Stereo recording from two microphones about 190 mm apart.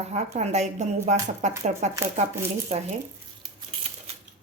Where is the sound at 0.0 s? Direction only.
35° right (ahead or behind).